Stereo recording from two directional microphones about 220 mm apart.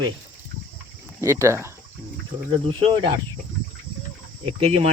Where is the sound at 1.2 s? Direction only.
15° right (ahead or behind).